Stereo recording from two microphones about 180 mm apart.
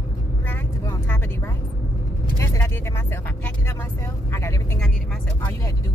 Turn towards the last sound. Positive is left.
turn(degrees=15)  # may be behind; listen again after turning